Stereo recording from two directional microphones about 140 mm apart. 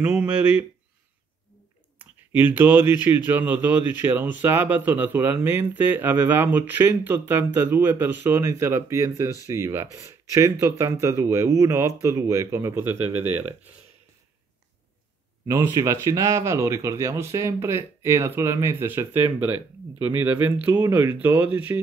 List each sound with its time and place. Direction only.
0.0 s a man's voice: 10° right (ahead or behind)
2.0 s a man's voice: 15° right (ahead or behind)
15.4 s a man's voice: 25° right (ahead or behind)